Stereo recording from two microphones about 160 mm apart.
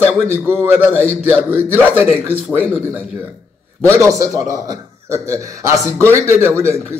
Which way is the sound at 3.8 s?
20° right (ahead or behind).